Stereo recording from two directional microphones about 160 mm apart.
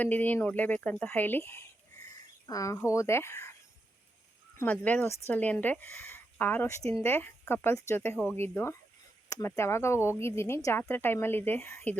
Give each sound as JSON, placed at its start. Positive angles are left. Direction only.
{"t": 0.0, "sound": "speech", "side_deg": 10}
{"t": 4.5, "sound": "speech", "side_deg": 10}